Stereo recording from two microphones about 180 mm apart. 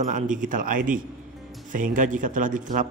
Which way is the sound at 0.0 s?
45° right (ahead or behind).